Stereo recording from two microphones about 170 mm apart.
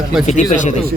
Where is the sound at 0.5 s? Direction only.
45° left (ahead or behind).